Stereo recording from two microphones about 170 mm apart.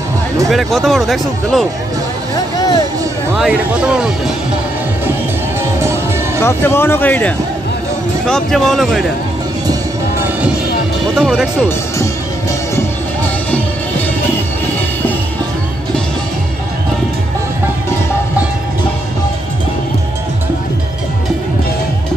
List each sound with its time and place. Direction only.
0.5 s speech: centre (ahead or behind)
3.3 s speech: 5° right (ahead or behind)
6.4 s speech: 15° left (ahead or behind)
11.1 s speech: 5° right (ahead or behind)
12.0 s music: 20° left (ahead or behind)